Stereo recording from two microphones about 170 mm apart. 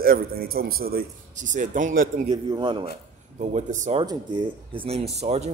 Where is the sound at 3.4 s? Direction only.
45° right (ahead or behind).